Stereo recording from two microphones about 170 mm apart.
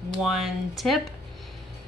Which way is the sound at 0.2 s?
Centre (ahead or behind).